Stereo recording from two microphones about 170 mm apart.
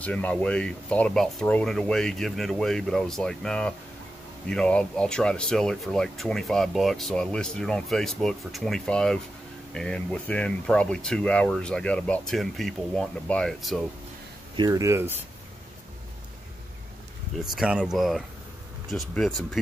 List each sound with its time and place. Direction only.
0.0 s speech: 10° left (ahead or behind)
14.6 s speech: 20° right (ahead or behind)
17.4 s speech: 5° right (ahead or behind)